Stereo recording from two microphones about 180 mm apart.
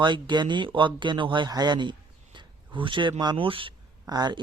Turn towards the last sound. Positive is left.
turn(degrees=-20)  # may be behind; listen again after turning